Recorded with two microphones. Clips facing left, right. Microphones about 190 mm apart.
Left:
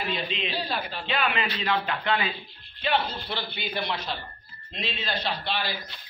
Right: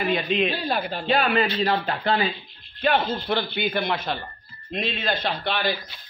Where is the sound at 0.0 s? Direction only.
50° right (ahead or behind); by 2.2 s 35° right (ahead or behind).